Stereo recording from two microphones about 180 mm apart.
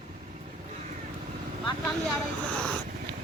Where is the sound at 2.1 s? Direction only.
5° left (ahead or behind).